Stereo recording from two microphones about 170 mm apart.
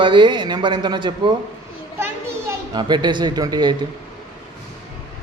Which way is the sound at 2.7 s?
25° right (ahead or behind).